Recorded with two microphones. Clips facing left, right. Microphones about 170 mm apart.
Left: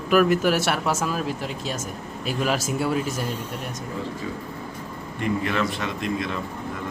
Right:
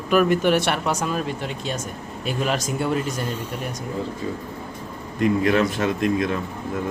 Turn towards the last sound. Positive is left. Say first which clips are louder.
# right 6 dB
turn(degrees=-50)  # may be behind; listen again after turning